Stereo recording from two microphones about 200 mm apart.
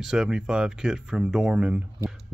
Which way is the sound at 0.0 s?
5° right (ahead or behind).